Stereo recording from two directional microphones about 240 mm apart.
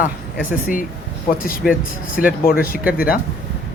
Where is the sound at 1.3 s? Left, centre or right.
Left.